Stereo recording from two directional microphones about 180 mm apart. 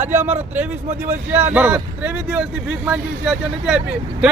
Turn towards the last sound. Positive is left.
turn(degrees=-5)  # may be behind; listen again after turning